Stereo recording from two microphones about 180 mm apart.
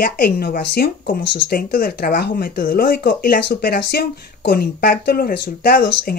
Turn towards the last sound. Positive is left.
turn(degrees=55)  # may be behind; listen again after turning